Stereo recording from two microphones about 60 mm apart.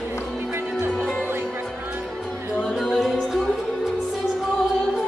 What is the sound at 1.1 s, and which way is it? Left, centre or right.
Music, right.